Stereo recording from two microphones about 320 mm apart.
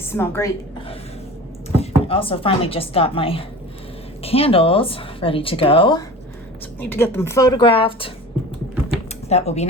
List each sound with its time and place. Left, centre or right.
0.0 s a woman's voice: centre
1.8 s speech: centre
9.3 s speech: centre